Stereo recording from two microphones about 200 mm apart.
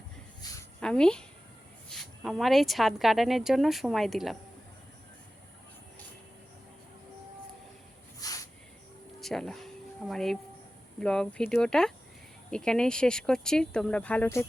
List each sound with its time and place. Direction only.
0.8 s speech: 5° left (ahead or behind)
8.2 s a sound: 15° left (ahead or behind)
9.2 s speech: centre (ahead or behind)